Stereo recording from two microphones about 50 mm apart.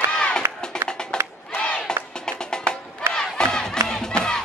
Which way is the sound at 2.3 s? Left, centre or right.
Centre.